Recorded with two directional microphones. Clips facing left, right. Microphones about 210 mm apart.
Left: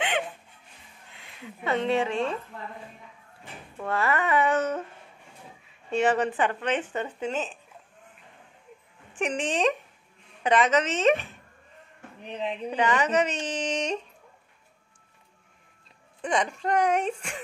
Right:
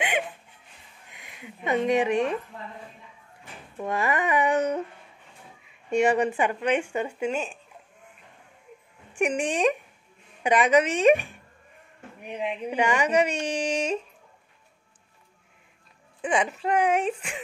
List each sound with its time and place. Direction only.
1.1 s speech: 15° right (ahead or behind)
3.8 s speech: 15° right (ahead or behind)
5.9 s speech: 10° right (ahead or behind)
9.1 s speech: 10° right (ahead or behind)
16.2 s speech: 5° right (ahead or behind)